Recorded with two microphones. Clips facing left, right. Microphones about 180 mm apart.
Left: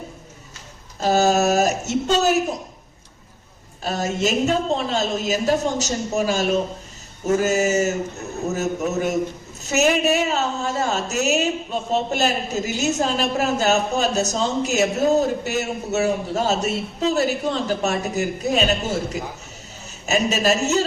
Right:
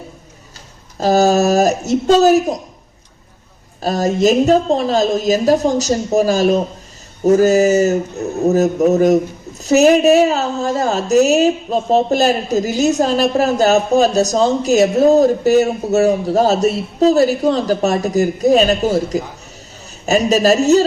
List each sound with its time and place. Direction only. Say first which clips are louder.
0.9 s a woman's voice: right 5 dB; 35° right (ahead or behind)
3.8 s a woman's voice: right 8 dB; 35° right (ahead or behind)